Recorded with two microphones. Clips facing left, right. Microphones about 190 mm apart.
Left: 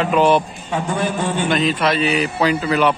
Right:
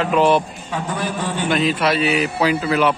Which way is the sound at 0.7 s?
25° left (ahead or behind).